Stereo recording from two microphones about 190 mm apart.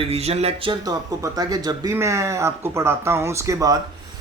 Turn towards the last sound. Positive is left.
turn(degrees=-20)  # may be behind; listen again after turning